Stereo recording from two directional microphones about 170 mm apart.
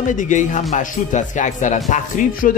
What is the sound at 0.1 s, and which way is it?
Speech, 50° left (ahead or behind).